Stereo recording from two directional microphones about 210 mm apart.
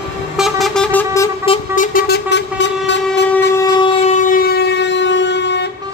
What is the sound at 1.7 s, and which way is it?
Vehicle, 45° left (ahead or behind).